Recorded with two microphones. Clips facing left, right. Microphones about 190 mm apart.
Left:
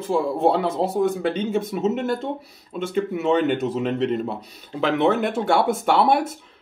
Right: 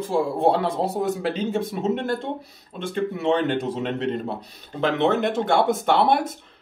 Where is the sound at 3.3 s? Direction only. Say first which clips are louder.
Left 2 dB; 5° left (ahead or behind).